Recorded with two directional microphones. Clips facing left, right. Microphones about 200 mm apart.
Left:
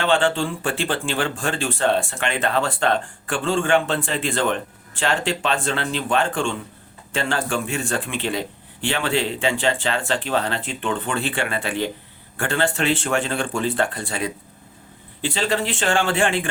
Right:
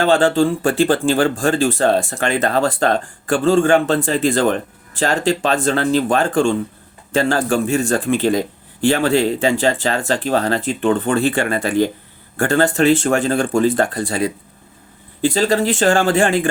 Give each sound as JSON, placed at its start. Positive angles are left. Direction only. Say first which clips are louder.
{"t": 0.0, "sound": "speech", "louder": "right 6 dB", "side_deg": -40}